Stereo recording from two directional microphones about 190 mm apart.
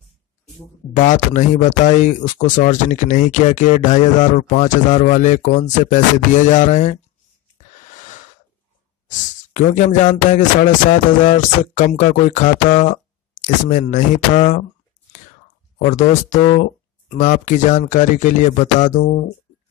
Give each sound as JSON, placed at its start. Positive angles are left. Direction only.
{"t": 0.9, "sound": "speech", "side_deg": 40}
{"t": 7.5, "sound": "a sound", "side_deg": 40}
{"t": 9.5, "sound": "speech", "side_deg": 40}
{"t": 15.8, "sound": "speech", "side_deg": 40}